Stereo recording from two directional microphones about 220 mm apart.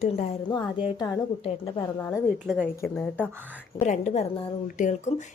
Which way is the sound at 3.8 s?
30° left (ahead or behind).